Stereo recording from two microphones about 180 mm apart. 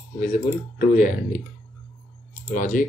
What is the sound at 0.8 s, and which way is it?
Speech, 45° left (ahead or behind).